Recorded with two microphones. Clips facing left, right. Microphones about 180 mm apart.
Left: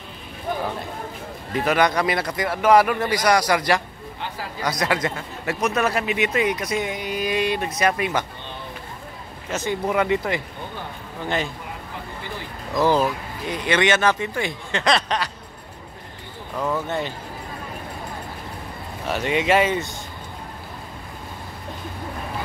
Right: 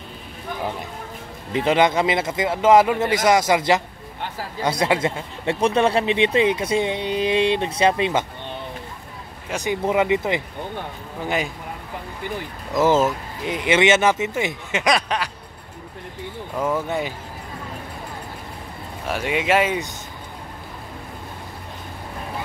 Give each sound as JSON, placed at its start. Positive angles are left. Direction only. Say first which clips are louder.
{"t": 1.5, "sound": "speech", "louder": "right 2 dB", "side_deg": -25}
{"t": 9.5, "sound": "speech", "louder": "right 2 dB", "side_deg": -15}
{"t": 11.2, "sound": "speech", "louder": "right 1 dB", "side_deg": -5}
{"t": 12.7, "sound": "speech", "louder": "right 2 dB", "side_deg": -20}
{"t": 16.5, "sound": "speech", "louder": "right 2 dB", "side_deg": -20}
{"t": 19.0, "sound": "speech", "louder": "left 1 dB", "side_deg": -5}